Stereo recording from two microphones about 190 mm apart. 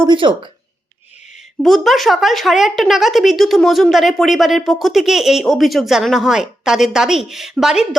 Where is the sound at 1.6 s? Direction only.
Centre (ahead or behind).